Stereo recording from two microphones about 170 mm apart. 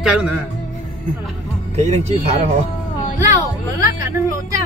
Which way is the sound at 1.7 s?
40° right (ahead or behind).